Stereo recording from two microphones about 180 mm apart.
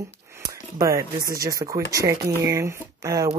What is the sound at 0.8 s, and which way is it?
Speech, 20° right (ahead or behind).